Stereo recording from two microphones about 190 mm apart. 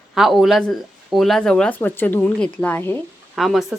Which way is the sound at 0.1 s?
Centre (ahead or behind).